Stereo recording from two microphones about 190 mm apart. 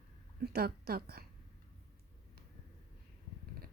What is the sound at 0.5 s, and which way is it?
Speech, 55° right (ahead or behind).